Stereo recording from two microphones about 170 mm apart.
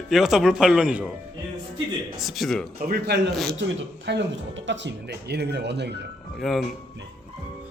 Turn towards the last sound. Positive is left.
turn(degrees=0)  # may be behind; listen again after turning